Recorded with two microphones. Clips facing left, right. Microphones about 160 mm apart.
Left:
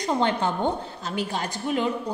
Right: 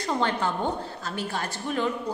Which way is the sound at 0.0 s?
20° left (ahead or behind).